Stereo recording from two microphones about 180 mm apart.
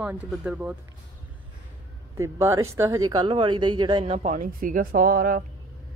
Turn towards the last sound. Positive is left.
turn(degrees=-55)  # may be behind; listen again after turning